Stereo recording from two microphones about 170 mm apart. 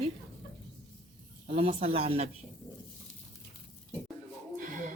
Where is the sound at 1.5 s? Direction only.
35° right (ahead or behind).